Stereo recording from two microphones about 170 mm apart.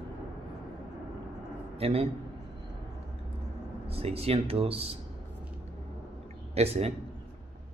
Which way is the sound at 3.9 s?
35° right (ahead or behind).